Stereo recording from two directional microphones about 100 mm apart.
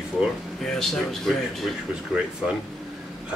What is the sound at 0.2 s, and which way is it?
Speech, 5° left (ahead or behind).